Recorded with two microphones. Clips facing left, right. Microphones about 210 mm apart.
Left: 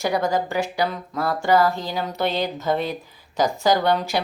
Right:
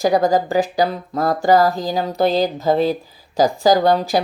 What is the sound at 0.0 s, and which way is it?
Mantra, 35° right (ahead or behind).